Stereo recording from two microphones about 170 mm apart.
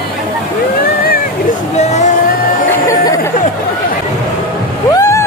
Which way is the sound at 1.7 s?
40° left (ahead or behind).